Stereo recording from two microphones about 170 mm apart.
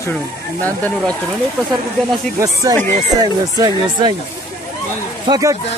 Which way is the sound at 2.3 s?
15° right (ahead or behind).